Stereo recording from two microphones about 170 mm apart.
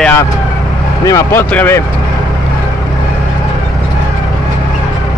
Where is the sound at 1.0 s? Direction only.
15° left (ahead or behind).